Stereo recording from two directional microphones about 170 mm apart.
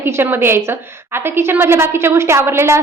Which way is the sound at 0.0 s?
15° right (ahead or behind).